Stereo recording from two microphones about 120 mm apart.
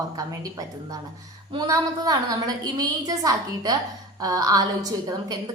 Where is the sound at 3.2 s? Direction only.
30° right (ahead or behind).